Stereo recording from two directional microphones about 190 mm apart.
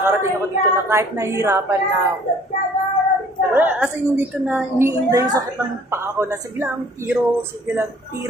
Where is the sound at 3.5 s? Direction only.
10° right (ahead or behind).